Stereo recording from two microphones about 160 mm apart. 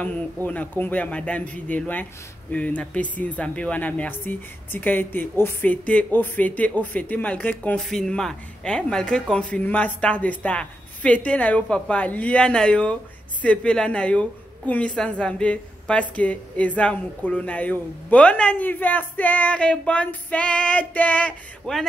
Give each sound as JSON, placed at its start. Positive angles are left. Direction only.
{"t": 0.0, "sound": "speech", "side_deg": 10}